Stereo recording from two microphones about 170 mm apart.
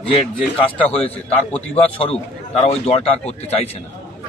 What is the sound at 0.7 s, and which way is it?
Speech, 10° left (ahead or behind).